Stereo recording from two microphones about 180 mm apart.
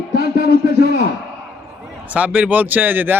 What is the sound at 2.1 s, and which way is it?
A man's voice, 10° right (ahead or behind).